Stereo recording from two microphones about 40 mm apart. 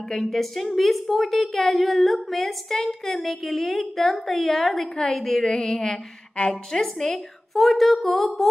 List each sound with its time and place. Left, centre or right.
0.2 s a woman's voice: centre
5.4 s speech: centre
7.6 s a woman's voice: centre